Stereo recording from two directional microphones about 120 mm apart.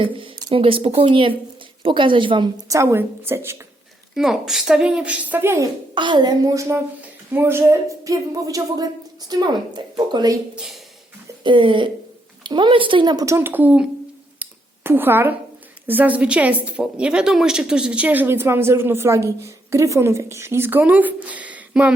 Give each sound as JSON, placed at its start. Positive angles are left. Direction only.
{"t": 0.5, "sound": "speech", "side_deg": -50}
{"t": 2.6, "sound": "a woman's voice", "side_deg": -25}
{"t": 4.1, "sound": "a woman's voice", "side_deg": -5}
{"t": 5.9, "sound": "a woman's voice", "side_deg": -40}
{"t": 10.5, "sound": "speech", "side_deg": -5}
{"t": 11.4, "sound": "speech", "side_deg": -45}
{"t": 14.8, "sound": "a woman's voice", "side_deg": -15}